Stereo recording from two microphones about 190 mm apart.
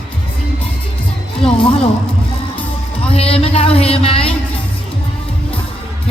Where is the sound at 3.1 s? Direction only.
30° left (ahead or behind).